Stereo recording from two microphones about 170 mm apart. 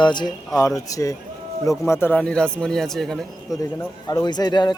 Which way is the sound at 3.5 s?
20° left (ahead or behind).